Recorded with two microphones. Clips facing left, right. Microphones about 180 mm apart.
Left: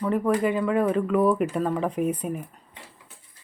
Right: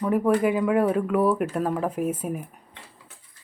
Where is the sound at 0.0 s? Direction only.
10° right (ahead or behind).